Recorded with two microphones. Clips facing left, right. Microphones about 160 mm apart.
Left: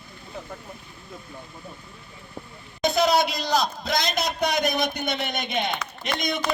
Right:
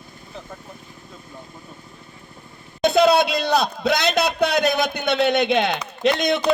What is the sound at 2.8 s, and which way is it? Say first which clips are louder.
A man's voice: right 5 dB; 60° right (ahead or behind).